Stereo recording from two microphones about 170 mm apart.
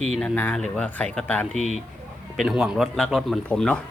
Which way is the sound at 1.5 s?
40° left (ahead or behind).